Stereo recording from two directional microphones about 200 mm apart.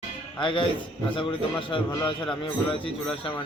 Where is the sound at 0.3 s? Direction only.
25° left (ahead or behind).